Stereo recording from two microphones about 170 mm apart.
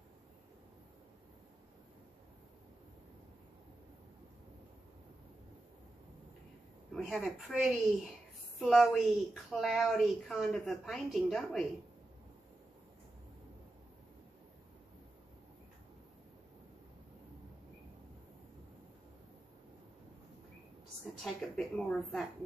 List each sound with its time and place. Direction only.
7.0 s a woman's voice: centre (ahead or behind)
21.0 s a woman's voice: centre (ahead or behind)